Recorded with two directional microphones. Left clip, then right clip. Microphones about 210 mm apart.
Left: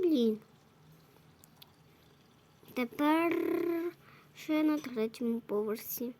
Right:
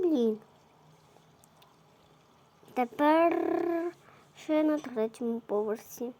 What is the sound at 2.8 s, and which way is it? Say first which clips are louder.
Speech: right 6 dB; 25° left (ahead or behind).